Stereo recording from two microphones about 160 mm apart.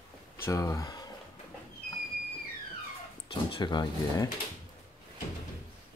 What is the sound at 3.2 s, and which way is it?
Speech, 30° left (ahead or behind).